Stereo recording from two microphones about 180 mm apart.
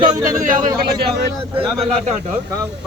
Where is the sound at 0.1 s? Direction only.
20° right (ahead or behind).